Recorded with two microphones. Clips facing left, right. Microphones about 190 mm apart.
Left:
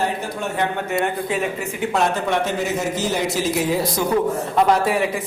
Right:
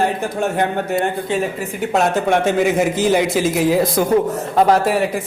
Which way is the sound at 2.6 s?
90° right.